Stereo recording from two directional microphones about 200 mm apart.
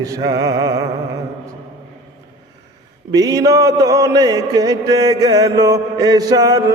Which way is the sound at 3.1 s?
20° right (ahead or behind).